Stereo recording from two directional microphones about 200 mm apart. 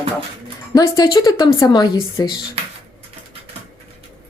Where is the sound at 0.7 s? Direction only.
15° left (ahead or behind).